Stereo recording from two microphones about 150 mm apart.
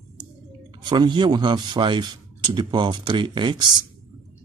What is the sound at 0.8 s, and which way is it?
Speech, 30° right (ahead or behind).